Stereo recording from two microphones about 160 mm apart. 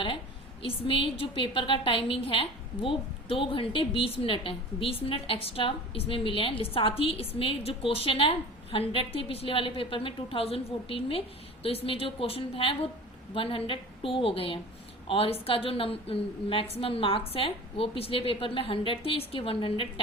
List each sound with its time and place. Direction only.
0.6 s a woman's voice: 35° left (ahead or behind)